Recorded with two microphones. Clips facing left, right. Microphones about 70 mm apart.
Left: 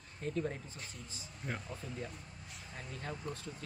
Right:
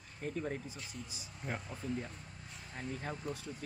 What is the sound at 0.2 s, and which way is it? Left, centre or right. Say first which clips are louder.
Speech: left 1 dB; centre.